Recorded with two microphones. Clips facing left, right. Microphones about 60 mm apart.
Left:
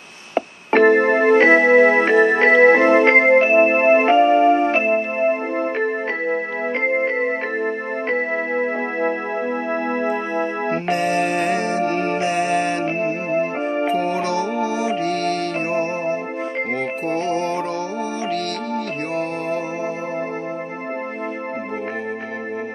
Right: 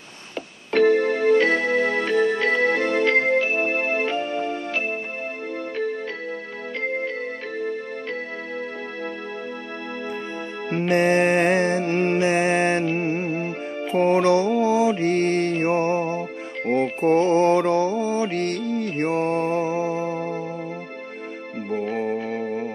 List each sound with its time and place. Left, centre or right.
0.3 s keyboard: left
5.8 s music: left
11.0 s music: right
12.8 s music: left
13.9 s music: right
14.4 s music: left
15.0 s music: right
15.8 s music: left
17.3 s music: right
19.1 s music: right